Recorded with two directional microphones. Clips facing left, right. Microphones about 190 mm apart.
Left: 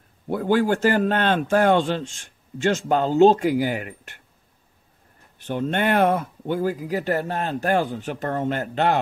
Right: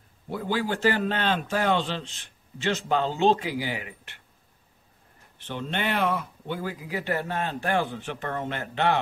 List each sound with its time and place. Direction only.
0.3 s speech: 50° left (ahead or behind)
5.4 s speech: 45° left (ahead or behind)